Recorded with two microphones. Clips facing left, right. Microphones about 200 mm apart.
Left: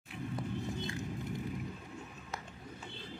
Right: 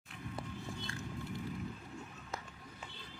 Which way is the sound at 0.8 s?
20° left (ahead or behind).